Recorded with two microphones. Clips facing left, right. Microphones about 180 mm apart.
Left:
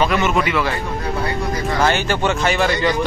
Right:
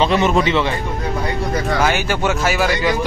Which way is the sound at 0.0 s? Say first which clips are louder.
Right 2 dB; 30° right (ahead or behind).